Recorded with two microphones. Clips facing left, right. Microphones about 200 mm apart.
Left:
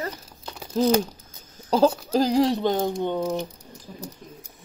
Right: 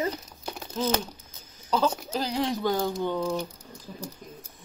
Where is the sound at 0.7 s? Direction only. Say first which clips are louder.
Left 8 dB; 35° left (ahead or behind).